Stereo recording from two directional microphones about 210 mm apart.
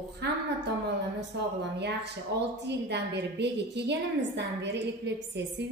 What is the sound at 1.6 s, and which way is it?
A woman's voice, 55° right (ahead or behind).